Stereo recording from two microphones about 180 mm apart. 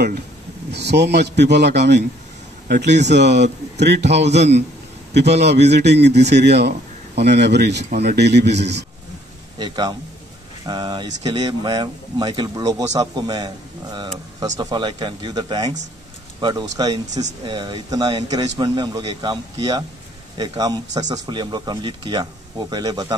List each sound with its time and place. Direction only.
0.7 s a man's voice: 70° right (ahead or behind)
9.6 s speech: 25° right (ahead or behind)